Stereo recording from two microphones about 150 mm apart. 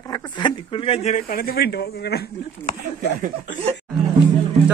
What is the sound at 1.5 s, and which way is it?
Speech, 90° left.